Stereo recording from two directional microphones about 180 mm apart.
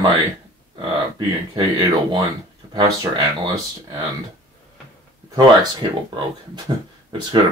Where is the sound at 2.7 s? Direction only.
25° right (ahead or behind).